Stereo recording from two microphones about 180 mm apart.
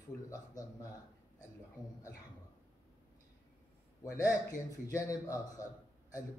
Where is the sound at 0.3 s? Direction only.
20° left (ahead or behind).